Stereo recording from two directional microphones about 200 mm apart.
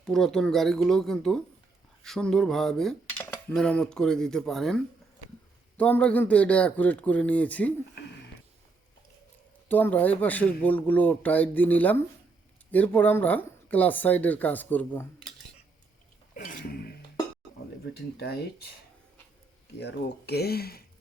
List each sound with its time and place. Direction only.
0.0 s speech: centre (ahead or behind)
9.6 s speech: 10° left (ahead or behind)
16.3 s throat clearing: 40° left (ahead or behind)
17.9 s speech: 55° left (ahead or behind)
19.8 s speech: 55° left (ahead or behind)